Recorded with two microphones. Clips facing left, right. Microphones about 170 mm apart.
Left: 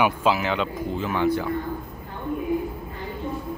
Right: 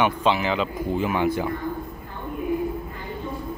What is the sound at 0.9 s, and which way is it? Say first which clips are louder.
Speech: even; 15° right (ahead or behind).